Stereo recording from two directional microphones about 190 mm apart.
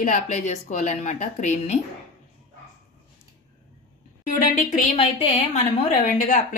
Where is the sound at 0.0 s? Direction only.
40° left (ahead or behind).